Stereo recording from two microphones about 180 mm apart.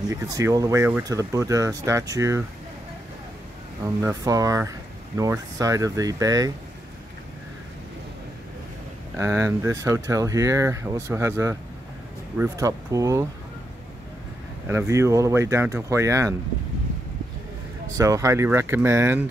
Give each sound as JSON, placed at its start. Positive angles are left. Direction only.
{"t": 0.1, "sound": "speech", "side_deg": -20}
{"t": 4.0, "sound": "speech", "side_deg": -20}
{"t": 9.1, "sound": "speech", "side_deg": -15}
{"t": 14.7, "sound": "speech", "side_deg": -15}
{"t": 17.9, "sound": "speech", "side_deg": -15}